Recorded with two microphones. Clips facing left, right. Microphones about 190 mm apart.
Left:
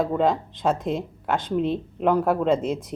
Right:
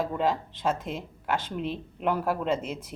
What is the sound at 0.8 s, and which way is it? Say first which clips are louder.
Speech: left 8 dB; 20° left (ahead or behind).